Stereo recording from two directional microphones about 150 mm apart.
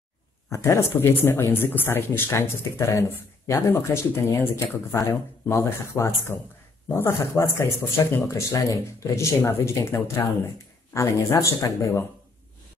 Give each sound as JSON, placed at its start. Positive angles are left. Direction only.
{"t": 0.5, "sound": "speech", "side_deg": 20}